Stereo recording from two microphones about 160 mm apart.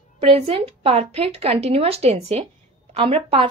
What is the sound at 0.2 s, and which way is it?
Speech, 35° right (ahead or behind).